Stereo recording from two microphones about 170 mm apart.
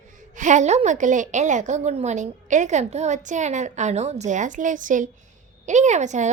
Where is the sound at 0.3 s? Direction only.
45° right (ahead or behind).